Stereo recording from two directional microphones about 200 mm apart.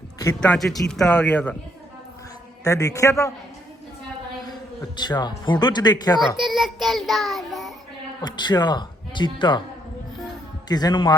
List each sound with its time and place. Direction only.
0.3 s a man's voice: 5° left (ahead or behind)
2.6 s a man's voice: 15° left (ahead or behind)
4.9 s speech: 20° left (ahead or behind)
6.4 s child singing: centre (ahead or behind)
8.2 s speech: 20° left (ahead or behind)
10.7 s speech: 20° left (ahead or behind)